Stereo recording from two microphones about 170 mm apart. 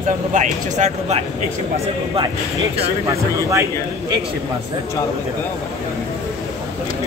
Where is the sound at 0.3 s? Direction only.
45° right (ahead or behind).